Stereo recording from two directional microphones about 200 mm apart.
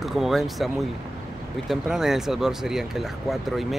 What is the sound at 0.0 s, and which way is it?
Speech, centre (ahead or behind).